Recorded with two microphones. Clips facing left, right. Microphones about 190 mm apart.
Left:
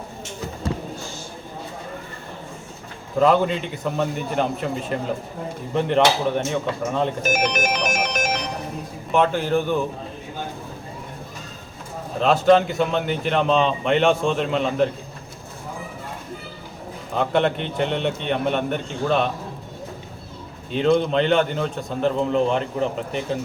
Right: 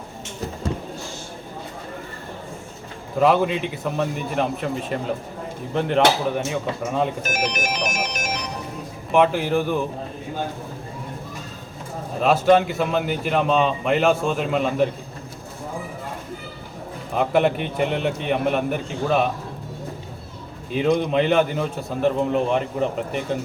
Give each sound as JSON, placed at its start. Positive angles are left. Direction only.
{"t": 3.2, "sound": "a man's voice", "side_deg": -5}
{"t": 7.3, "sound": "ringtone", "side_deg": 55}
{"t": 9.1, "sound": "a man's voice", "side_deg": -5}
{"t": 12.2, "sound": "a man's voice", "side_deg": -5}
{"t": 17.2, "sound": "a man's voice", "side_deg": -5}
{"t": 20.7, "sound": "a man's voice", "side_deg": -15}